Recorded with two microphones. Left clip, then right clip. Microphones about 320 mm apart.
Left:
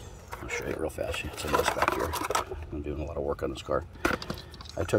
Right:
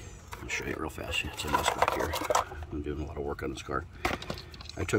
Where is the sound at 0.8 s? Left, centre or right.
Centre.